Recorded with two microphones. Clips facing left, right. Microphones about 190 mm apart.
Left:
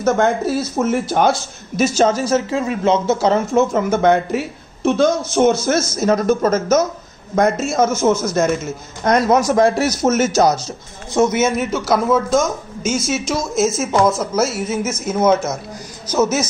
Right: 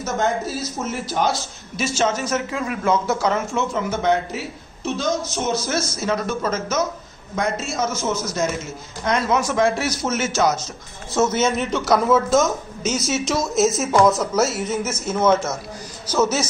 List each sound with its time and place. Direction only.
0.0 s speech: 55° left (ahead or behind)
1.8 s a man's voice: 40° left (ahead or behind)
11.1 s a man's voice: 10° left (ahead or behind)